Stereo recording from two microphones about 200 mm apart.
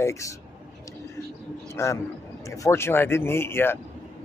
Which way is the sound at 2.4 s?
15° left (ahead or behind).